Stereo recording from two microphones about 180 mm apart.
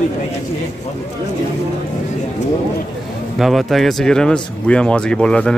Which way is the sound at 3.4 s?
Centre (ahead or behind).